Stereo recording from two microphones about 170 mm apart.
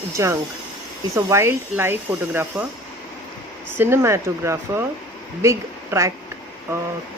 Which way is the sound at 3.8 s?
15° right (ahead or behind).